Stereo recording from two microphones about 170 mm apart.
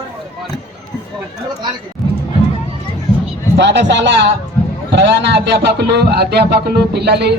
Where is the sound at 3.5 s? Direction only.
90° right.